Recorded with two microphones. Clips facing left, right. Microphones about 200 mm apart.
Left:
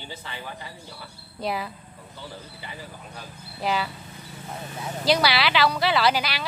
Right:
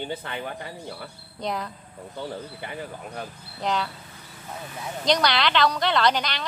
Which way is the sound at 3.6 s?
5° left (ahead or behind).